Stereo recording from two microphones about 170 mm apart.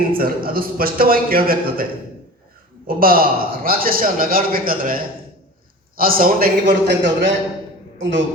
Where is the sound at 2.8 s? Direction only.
60° right (ahead or behind).